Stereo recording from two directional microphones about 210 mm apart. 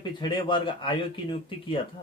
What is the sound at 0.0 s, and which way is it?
Speech, 20° left (ahead or behind).